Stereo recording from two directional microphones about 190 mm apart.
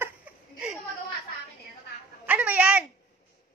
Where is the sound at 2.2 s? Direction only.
10° right (ahead or behind).